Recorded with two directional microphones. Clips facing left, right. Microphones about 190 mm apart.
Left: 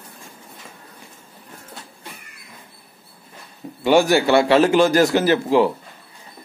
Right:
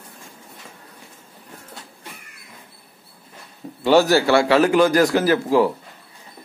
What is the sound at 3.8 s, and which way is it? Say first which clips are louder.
A man's voice: even; 15° left (ahead or behind).